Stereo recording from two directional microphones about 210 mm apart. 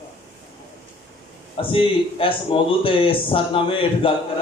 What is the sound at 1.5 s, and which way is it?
A man's voice, 25° left (ahead or behind).